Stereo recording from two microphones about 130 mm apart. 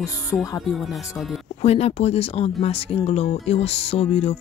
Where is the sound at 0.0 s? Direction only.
25° left (ahead or behind).